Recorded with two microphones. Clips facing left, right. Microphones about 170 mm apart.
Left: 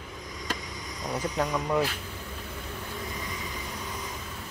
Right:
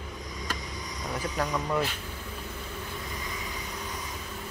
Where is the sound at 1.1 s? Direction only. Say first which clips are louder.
Left 2 dB; 20° left (ahead or behind).